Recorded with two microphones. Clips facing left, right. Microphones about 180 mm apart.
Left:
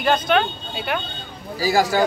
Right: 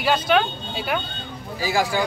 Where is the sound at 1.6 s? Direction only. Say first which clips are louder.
Left 4 dB; 40° left (ahead or behind).